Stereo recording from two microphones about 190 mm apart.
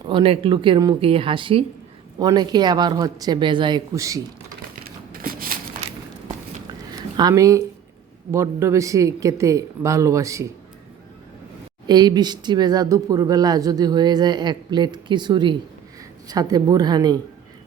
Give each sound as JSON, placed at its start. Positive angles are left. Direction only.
{"t": 0.1, "sound": "speech", "side_deg": -30}
{"t": 5.1, "sound": "a sound", "side_deg": -50}
{"t": 7.2, "sound": "speech", "side_deg": -20}
{"t": 11.9, "sound": "speech", "side_deg": -20}